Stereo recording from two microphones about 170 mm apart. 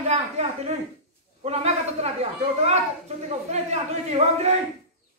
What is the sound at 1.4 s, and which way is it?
A woman's voice, 40° right (ahead or behind).